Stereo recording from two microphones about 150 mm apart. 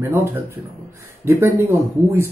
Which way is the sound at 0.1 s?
15° right (ahead or behind).